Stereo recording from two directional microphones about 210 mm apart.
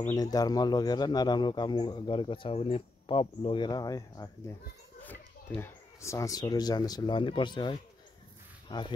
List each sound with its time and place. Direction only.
0.1 s speech: 15° left (ahead or behind)